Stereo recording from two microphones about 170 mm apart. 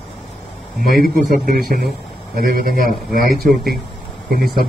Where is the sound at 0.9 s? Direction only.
60° right (ahead or behind).